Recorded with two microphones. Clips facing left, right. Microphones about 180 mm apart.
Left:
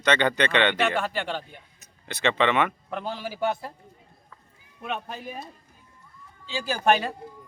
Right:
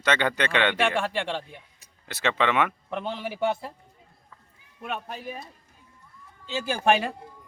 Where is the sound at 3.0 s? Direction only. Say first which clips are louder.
Even; 25° right (ahead or behind).